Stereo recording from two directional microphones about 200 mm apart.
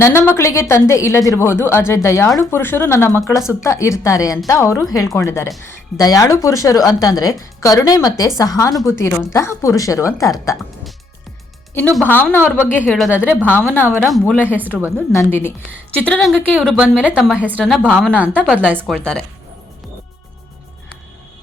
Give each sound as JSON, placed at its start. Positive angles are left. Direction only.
{"t": 0.0, "sound": "speech", "side_deg": 10}
{"t": 11.9, "sound": "speech", "side_deg": 10}
{"t": 14.0, "sound": "a woman's voice", "side_deg": 0}
{"t": 14.9, "sound": "a woman's voice", "side_deg": 10}
{"t": 17.6, "sound": "a woman's voice", "side_deg": 5}
{"t": 18.7, "sound": "a woman's voice", "side_deg": -10}
{"t": 18.9, "sound": "a woman's voice", "side_deg": 5}